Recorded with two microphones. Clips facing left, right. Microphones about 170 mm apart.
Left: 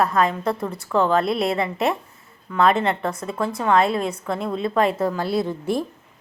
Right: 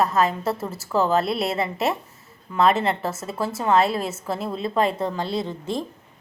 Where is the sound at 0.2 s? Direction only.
5° right (ahead or behind).